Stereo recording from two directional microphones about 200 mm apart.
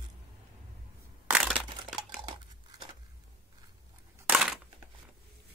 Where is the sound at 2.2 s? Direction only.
20° right (ahead or behind).